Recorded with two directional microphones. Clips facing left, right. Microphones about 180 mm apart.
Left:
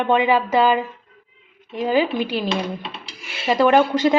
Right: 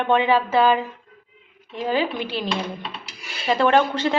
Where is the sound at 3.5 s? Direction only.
10° left (ahead or behind).